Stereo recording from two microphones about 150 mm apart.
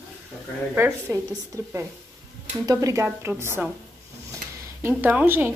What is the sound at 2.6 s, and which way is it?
A woman's voice, 25° right (ahead or behind).